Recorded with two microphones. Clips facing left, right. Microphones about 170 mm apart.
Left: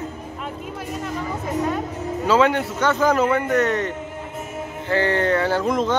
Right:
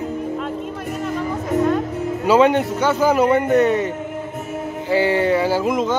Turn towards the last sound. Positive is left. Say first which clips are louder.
# right 2 dB
turn(degrees=-5)  # may be behind; listen again after turning